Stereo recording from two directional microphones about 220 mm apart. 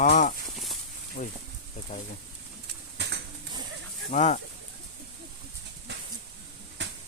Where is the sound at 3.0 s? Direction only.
50° right (ahead or behind).